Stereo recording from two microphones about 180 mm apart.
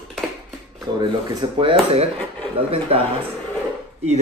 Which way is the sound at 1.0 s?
25° right (ahead or behind).